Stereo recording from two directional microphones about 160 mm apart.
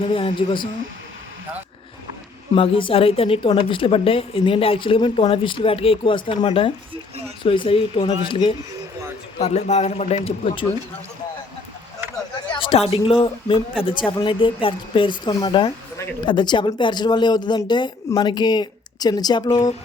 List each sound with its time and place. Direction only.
0.0 s a woman's voice: 35° left (ahead or behind)
2.6 s a woman's voice: 35° left (ahead or behind)
9.4 s a woman's voice: 45° left (ahead or behind)
12.5 s a woman's voice: 35° left (ahead or behind)